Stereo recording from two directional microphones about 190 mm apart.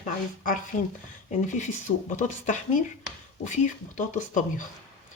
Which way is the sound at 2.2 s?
40° left (ahead or behind).